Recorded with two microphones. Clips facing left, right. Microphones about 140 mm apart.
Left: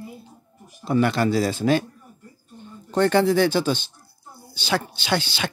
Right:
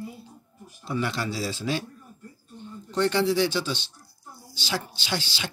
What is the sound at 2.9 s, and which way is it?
Speech, 50° left (ahead or behind).